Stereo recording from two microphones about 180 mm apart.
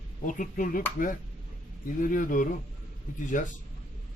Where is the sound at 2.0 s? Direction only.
50° left (ahead or behind).